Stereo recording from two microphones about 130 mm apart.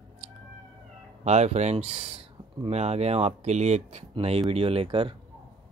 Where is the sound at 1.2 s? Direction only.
60° right (ahead or behind).